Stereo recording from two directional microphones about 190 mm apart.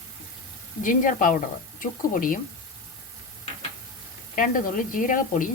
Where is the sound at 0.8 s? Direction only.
45° left (ahead or behind).